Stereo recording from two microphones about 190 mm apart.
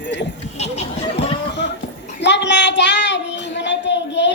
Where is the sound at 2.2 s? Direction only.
65° left (ahead or behind).